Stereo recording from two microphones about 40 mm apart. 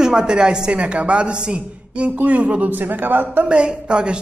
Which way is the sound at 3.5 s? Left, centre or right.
Right.